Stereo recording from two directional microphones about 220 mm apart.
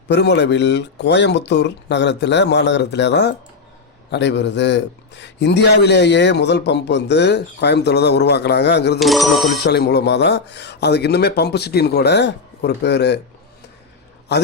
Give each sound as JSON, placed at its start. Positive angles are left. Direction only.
{"t": 0.1, "sound": "a man's voice", "side_deg": 50}
{"t": 9.0, "sound": "a sound", "side_deg": 0}
{"t": 9.6, "sound": "a man's voice", "side_deg": 50}